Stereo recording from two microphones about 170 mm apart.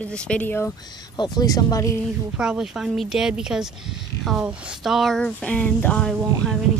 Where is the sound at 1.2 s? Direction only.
25° left (ahead or behind).